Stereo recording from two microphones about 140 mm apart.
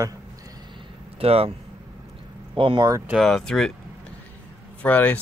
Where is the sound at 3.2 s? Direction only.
5° left (ahead or behind).